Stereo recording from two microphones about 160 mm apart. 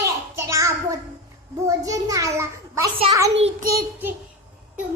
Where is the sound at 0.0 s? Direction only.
20° right (ahead or behind).